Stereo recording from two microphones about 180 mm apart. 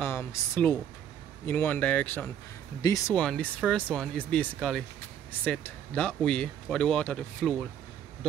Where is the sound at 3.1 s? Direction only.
5° left (ahead or behind).